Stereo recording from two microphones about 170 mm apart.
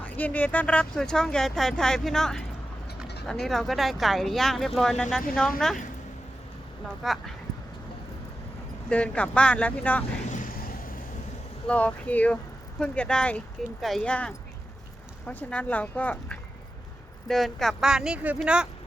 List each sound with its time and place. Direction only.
0.0 s speech: 10° left (ahead or behind)
3.4 s speech: centre (ahead or behind)
7.0 s speech: centre (ahead or behind)
8.9 s speech: 5° left (ahead or behind)
10.2 s vehicle: 45° left (ahead or behind)
11.7 s speech: 10° left (ahead or behind)